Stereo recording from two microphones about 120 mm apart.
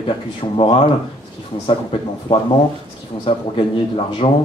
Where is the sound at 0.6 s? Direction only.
45° left (ahead or behind).